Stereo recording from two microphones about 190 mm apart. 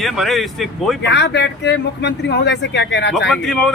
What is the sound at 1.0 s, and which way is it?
Speech, 65° left (ahead or behind).